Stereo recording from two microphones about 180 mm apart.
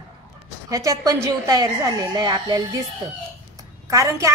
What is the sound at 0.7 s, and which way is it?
A woman's voice, 20° right (ahead or behind).